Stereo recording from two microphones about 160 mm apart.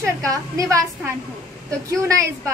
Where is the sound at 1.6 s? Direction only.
20° right (ahead or behind).